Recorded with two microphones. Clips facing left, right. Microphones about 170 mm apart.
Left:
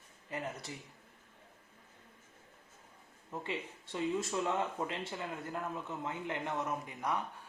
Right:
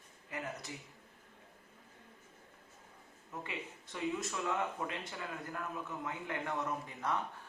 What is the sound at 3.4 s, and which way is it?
Speech, 30° left (ahead or behind).